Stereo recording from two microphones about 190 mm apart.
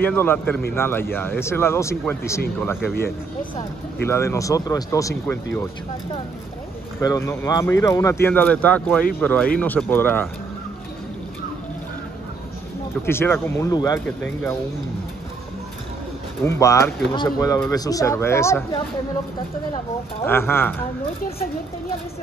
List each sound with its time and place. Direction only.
0.0 s speech: 10° left (ahead or behind)
7.0 s speech: 15° left (ahead or behind)
13.0 s speech: 10° left (ahead or behind)
14.0 s speech: 5° left (ahead or behind)
16.4 s speech: 15° left (ahead or behind)
20.2 s speech: 10° left (ahead or behind)